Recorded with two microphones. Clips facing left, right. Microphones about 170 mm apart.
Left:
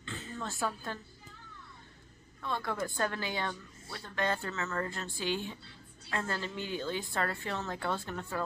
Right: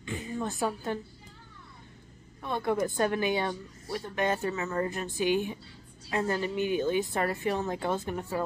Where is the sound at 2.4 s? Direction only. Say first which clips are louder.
Right 6 dB; 20° right (ahead or behind).